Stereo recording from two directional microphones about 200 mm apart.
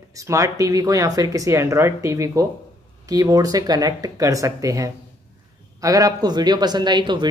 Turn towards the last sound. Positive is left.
turn(degrees=-20)  # may be behind; listen again after turning